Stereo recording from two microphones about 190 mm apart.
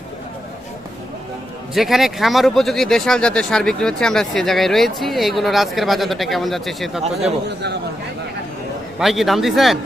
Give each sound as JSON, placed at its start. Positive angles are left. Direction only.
{"t": 1.7, "sound": "speech", "side_deg": 0}
{"t": 7.0, "sound": "a man's voice", "side_deg": -35}
{"t": 7.4, "sound": "speech", "side_deg": -60}
{"t": 9.0, "sound": "speech", "side_deg": 0}